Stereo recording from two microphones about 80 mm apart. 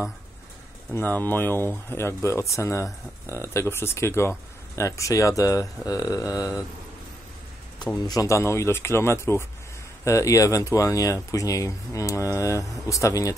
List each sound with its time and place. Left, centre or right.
0.9 s speech: left
7.9 s speech: left